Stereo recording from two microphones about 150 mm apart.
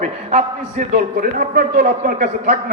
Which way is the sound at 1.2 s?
75° right (ahead or behind).